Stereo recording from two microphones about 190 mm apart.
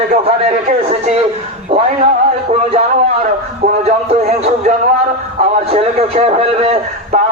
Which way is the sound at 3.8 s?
35° right (ahead or behind).